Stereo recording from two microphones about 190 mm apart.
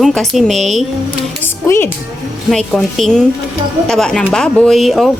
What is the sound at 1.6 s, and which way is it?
Speech, 10° left (ahead or behind).